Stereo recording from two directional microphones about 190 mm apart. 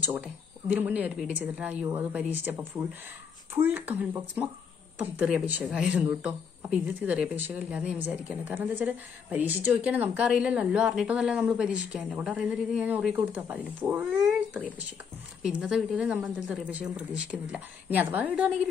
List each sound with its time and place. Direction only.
0.0 s a woman's voice: 10° right (ahead or behind)